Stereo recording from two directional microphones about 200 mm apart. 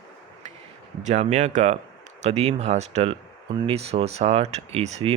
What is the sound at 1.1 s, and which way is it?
Speech, 35° right (ahead or behind).